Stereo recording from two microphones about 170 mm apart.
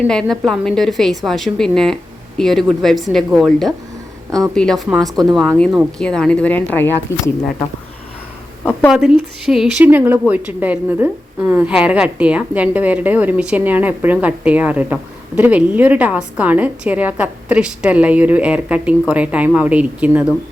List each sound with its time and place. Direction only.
0.1 s a woman's voice: 5° left (ahead or behind)
4.3 s speech: 20° right (ahead or behind)
4.5 s a woman's voice: 5° left (ahead or behind)
5.0 s speech: 25° right (ahead or behind)
5.5 s speech: 5° left (ahead or behind)
8.9 s a woman's voice: centre (ahead or behind)